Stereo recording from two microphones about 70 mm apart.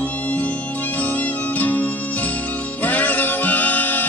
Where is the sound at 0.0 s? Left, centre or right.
Left.